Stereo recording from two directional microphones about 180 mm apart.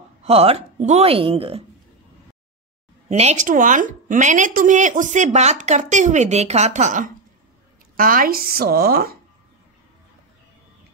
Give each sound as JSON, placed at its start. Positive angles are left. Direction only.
{"t": 0.2, "sound": "a woman's voice", "side_deg": -35}
{"t": 3.1, "sound": "a woman's voice", "side_deg": -40}